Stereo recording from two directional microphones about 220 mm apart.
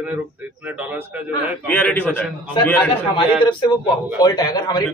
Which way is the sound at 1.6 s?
5° left (ahead or behind).